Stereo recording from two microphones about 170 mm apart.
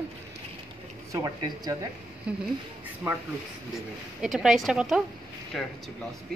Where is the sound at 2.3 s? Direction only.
5° right (ahead or behind).